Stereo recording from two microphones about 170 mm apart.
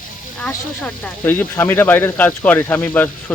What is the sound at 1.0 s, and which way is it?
Speech, 10° left (ahead or behind).